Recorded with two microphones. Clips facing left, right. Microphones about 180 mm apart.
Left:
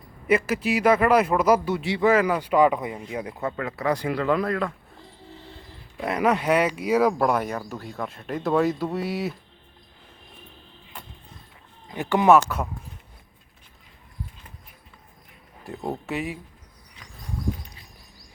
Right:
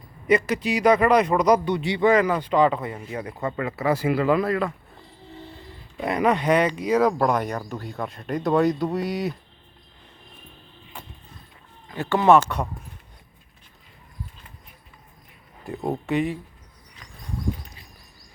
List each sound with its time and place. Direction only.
0.3 s speech: 5° left (ahead or behind)
3.5 s speech: 5° right (ahead or behind)
6.0 s speech: centre (ahead or behind)
11.9 s speech: 15° left (ahead or behind)
15.6 s speech: centre (ahead or behind)